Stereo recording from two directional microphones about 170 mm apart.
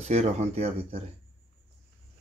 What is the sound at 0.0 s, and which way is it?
Speech, 40° right (ahead or behind).